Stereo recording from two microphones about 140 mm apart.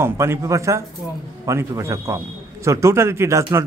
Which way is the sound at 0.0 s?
20° right (ahead or behind).